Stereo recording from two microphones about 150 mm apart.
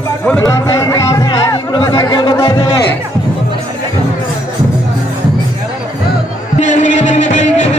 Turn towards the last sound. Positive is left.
turn(degrees=50)  # may be behind; listen again after turning